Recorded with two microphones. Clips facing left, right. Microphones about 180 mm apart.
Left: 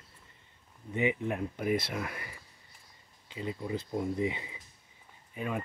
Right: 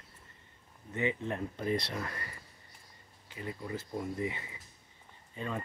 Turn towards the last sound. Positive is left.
turn(degrees=10)  # may be behind; listen again after turning